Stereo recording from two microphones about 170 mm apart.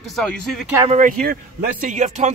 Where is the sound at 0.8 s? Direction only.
45° right (ahead or behind).